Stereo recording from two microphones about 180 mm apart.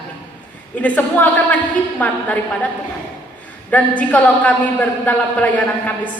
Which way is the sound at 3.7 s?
10° left (ahead or behind).